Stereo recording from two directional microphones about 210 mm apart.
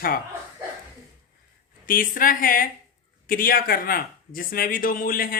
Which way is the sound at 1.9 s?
40° left (ahead or behind).